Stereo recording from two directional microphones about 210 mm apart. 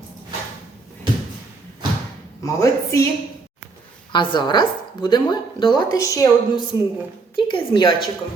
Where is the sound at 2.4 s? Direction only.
15° left (ahead or behind).